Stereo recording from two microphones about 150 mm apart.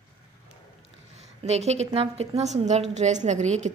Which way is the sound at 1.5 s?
45° right (ahead or behind).